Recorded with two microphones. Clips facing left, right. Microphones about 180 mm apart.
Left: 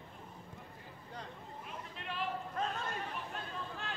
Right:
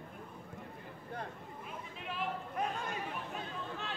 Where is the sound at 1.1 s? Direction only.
55° right (ahead or behind).